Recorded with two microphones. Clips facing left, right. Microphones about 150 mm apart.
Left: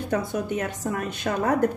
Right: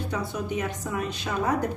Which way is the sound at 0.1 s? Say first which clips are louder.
Left 6 dB; 50° left (ahead or behind).